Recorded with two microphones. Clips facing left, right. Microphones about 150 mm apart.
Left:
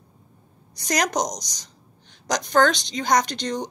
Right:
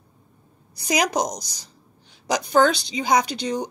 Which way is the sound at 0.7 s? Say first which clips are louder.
Right 1 dB; 10° right (ahead or behind).